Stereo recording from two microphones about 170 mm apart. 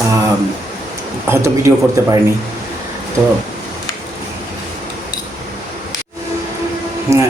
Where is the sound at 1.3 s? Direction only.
15° right (ahead or behind).